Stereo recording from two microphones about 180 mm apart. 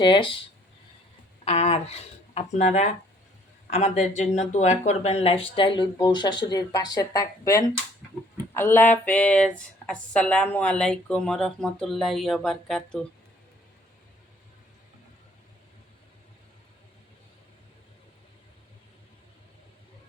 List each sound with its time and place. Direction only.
0.0 s speech: 25° left (ahead or behind)
1.5 s speech: 35° left (ahead or behind); by 13.1 s 5° left (ahead or behind)